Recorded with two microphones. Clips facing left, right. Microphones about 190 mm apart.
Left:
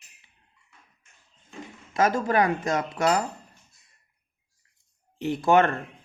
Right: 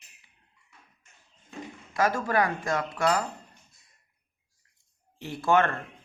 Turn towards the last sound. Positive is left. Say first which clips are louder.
# left 4 dB
turn(degrees=20)  # may be behind; listen again after turning